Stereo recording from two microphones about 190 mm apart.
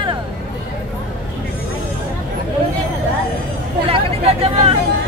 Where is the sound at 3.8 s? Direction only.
30° right (ahead or behind).